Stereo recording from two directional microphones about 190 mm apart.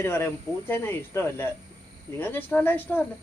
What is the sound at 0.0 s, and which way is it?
A man's voice, 10° left (ahead or behind).